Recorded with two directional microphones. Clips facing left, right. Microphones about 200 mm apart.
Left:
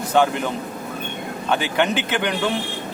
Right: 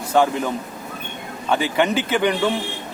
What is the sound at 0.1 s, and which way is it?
A man's voice, centre (ahead or behind).